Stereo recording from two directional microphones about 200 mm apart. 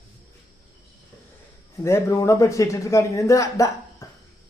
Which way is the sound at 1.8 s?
15° left (ahead or behind).